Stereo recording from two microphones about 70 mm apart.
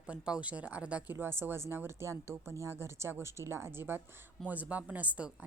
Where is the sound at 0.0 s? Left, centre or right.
Centre.